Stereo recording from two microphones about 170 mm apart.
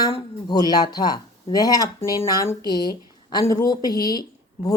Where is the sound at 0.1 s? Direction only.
25° left (ahead or behind).